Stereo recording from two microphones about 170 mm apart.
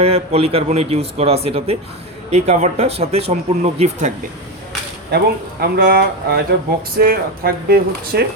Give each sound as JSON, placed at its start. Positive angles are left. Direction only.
{"t": 0.0, "sound": "speech", "side_deg": -35}
{"t": 5.1, "sound": "speech", "side_deg": -70}